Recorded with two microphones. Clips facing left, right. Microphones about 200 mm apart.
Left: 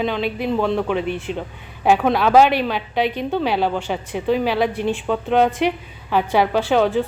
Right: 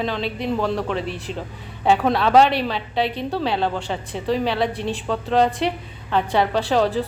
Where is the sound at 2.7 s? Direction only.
30° right (ahead or behind).